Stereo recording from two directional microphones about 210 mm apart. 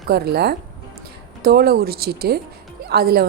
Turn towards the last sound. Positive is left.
turn(degrees=-50)  # may be behind; listen again after turning